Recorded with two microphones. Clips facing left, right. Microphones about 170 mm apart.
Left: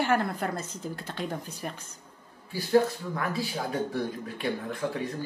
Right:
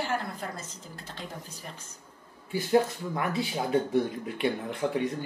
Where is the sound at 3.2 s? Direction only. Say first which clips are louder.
Right 2 dB; 20° right (ahead or behind).